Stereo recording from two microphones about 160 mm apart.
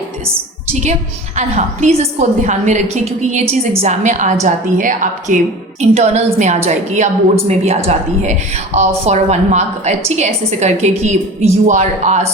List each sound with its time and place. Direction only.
0.7 s a woman's voice: 45° right (ahead or behind)